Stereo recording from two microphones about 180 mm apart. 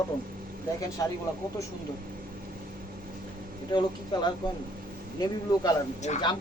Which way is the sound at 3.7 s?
25° left (ahead or behind).